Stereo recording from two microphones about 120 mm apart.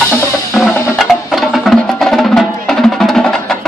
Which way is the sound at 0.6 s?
Centre (ahead or behind).